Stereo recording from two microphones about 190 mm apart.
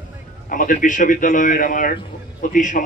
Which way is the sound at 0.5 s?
45° left (ahead or behind).